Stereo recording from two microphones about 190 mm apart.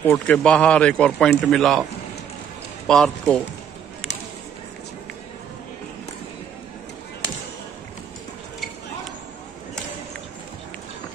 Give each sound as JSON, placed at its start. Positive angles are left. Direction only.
{"t": 0.0, "sound": "speech", "side_deg": 5}
{"t": 2.9, "sound": "speech", "side_deg": 0}